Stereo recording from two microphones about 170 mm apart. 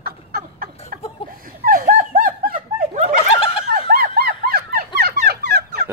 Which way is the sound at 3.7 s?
65° right (ahead or behind).